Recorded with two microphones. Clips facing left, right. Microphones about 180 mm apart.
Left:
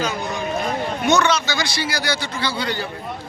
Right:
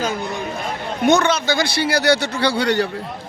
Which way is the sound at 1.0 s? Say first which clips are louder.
Right 3 dB; 55° right (ahead or behind).